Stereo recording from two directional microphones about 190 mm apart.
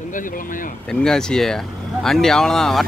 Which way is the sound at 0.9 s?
5° left (ahead or behind).